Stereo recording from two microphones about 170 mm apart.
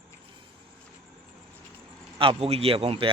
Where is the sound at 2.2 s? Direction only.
35° right (ahead or behind).